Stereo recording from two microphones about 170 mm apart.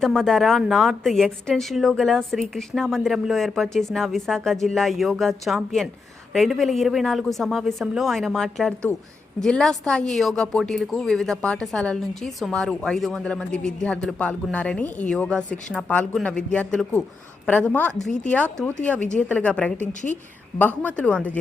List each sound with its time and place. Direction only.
0.0 s a woman's voice: centre (ahead or behind)
19.9 s a woman's voice: 45° left (ahead or behind)
20.6 s a woman's voice: 10° left (ahead or behind)